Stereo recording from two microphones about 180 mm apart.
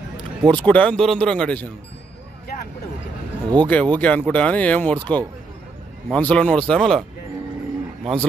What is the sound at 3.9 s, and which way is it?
Speech, 10° left (ahead or behind).